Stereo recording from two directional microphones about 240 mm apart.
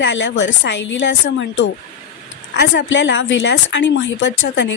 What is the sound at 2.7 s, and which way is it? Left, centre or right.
A woman's voice, left.